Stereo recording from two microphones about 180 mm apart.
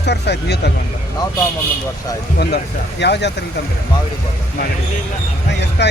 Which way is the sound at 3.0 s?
70° left (ahead or behind).